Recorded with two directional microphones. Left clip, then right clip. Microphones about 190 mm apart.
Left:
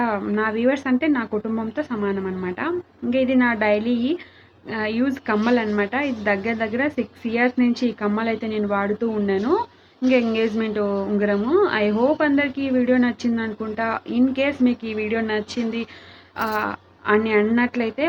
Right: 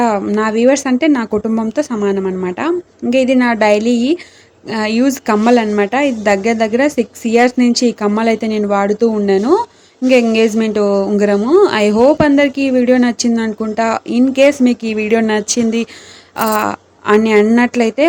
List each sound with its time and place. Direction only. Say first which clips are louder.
0.0 s a woman's voice: right 8 dB; 40° right (ahead or behind)